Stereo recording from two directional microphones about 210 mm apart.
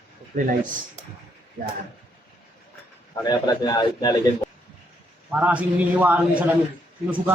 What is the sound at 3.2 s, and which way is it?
A man's voice, 20° left (ahead or behind).